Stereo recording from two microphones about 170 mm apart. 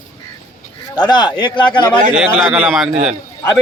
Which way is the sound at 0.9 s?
25° left (ahead or behind).